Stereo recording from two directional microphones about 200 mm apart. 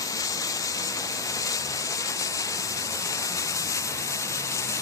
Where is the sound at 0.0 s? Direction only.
15° left (ahead or behind).